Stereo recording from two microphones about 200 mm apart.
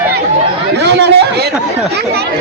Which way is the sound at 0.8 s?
60° right (ahead or behind).